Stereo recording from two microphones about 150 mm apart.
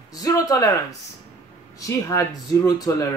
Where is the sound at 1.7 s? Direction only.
20° left (ahead or behind).